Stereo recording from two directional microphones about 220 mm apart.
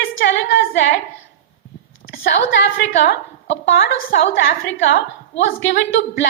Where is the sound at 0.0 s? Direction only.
50° left (ahead or behind).